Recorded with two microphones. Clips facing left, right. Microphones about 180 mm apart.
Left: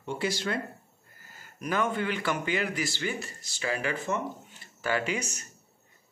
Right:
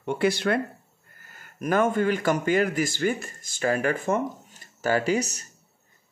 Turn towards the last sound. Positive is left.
turn(degrees=-40)  # may be behind; listen again after turning